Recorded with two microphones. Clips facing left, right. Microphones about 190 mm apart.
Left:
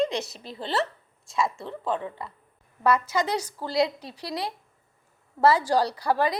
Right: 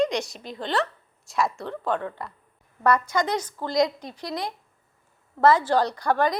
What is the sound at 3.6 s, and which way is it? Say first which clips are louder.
Speech: right 2 dB; 30° left (ahead or behind).